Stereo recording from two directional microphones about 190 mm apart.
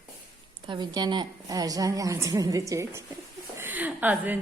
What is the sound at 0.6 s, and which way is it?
A woman's voice, 20° right (ahead or behind).